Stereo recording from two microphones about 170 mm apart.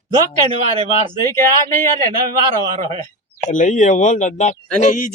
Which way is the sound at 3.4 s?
45° left (ahead or behind).